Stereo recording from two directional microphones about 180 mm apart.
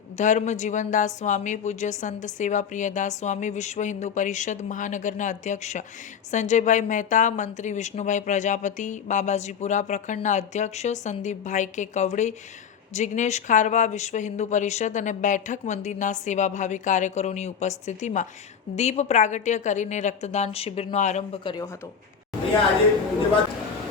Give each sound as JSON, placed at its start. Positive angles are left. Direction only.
{"t": 0.2, "sound": "a woman's voice", "side_deg": 40}
{"t": 21.4, "sound": "speech", "side_deg": 25}